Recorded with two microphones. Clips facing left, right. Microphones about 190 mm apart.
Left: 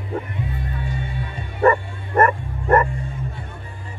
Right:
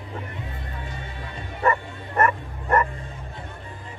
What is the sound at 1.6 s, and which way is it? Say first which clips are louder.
Bow-wow: left 7 dB; 45° left (ahead or behind).